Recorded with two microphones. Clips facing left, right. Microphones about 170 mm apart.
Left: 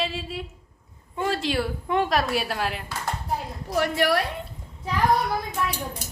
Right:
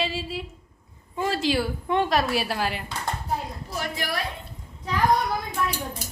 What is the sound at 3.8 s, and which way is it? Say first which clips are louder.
Speech: left 8 dB; 65° left (ahead or behind).